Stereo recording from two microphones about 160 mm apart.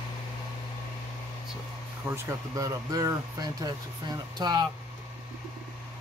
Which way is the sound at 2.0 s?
20° right (ahead or behind).